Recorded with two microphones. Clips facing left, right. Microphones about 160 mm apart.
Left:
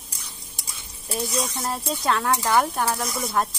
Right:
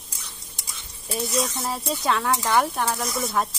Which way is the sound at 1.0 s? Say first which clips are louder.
Right 1 dB; centre (ahead or behind).